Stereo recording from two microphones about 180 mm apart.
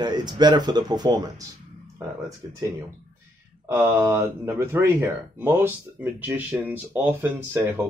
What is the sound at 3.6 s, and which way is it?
Speech, 10° right (ahead or behind).